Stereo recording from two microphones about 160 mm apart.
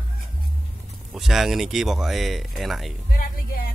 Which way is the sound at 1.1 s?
Centre (ahead or behind).